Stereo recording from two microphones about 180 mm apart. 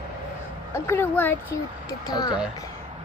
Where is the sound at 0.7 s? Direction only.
15° left (ahead or behind).